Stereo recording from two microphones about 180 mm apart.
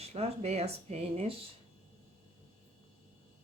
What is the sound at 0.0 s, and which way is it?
Speech, 35° right (ahead or behind).